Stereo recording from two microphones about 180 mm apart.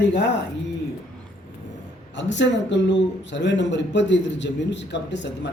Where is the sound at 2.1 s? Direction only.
85° left.